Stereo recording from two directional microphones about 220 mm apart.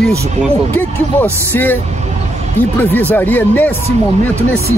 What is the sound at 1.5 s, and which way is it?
Speech, 10° left (ahead or behind).